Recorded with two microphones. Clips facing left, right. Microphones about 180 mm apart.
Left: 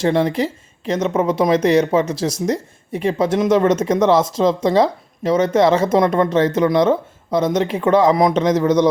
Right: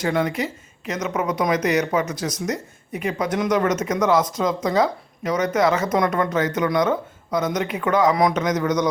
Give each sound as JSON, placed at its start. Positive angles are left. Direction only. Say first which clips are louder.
{"t": 0.0, "sound": "a woman's voice", "louder": "left 5 dB", "side_deg": 30}